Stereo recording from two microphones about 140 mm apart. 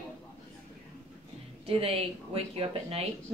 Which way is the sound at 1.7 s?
45° right (ahead or behind).